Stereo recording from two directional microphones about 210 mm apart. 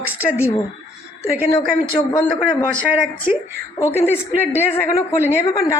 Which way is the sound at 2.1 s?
20° left (ahead or behind).